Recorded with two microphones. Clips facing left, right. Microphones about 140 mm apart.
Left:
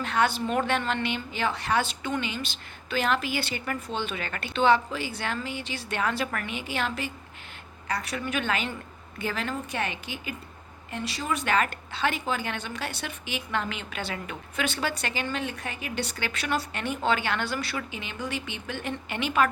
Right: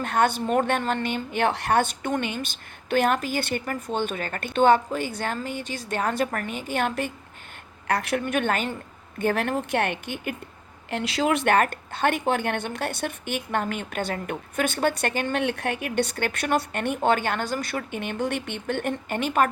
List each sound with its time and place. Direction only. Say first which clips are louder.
0.0 s a woman's voice: right 3 dB; 50° right (ahead or behind)
10.9 s a woman's voice: right 7 dB; 90° right; by 19.5 s 45° right (ahead or behind)